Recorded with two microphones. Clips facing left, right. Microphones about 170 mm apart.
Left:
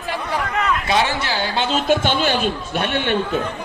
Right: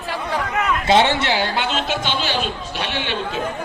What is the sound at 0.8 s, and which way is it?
Speech, 25° right (ahead or behind).